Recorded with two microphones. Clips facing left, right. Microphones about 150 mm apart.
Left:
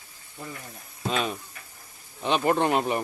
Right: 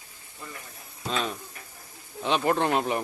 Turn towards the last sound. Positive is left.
turn(degrees=0)  # may be behind; listen again after turning